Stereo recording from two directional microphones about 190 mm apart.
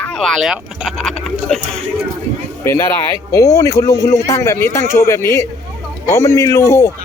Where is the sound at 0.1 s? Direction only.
Centre (ahead or behind).